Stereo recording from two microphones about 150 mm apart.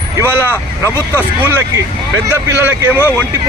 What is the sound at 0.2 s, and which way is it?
A man's voice, 15° right (ahead or behind).